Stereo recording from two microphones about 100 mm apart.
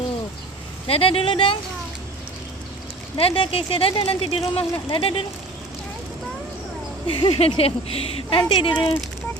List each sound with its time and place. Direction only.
0.9 s speech: 70° left (ahead or behind)
3.2 s speech: 65° left (ahead or behind)
7.1 s a woman's voice: 65° left (ahead or behind)